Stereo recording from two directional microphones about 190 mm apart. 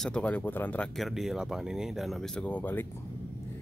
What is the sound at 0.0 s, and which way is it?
Speech, 5° left (ahead or behind).